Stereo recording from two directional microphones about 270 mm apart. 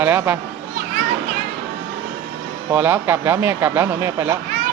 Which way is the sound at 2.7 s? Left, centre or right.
Centre.